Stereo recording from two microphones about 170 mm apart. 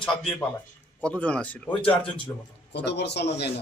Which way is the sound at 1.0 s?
10° left (ahead or behind).